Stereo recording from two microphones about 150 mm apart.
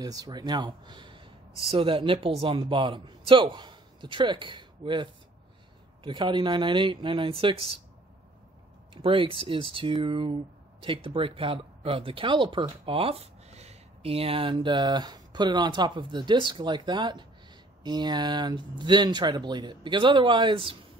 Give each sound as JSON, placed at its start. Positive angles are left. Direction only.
{"t": 0.0, "sound": "speech", "side_deg": -25}
{"t": 8.9, "sound": "speech", "side_deg": -35}